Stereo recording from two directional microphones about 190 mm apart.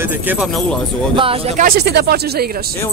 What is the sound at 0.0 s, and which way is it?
Speech, 10° right (ahead or behind).